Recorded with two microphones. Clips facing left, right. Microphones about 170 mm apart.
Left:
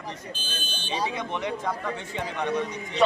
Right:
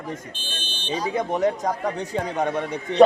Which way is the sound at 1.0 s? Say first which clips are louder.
Right 11 dB; 45° right (ahead or behind).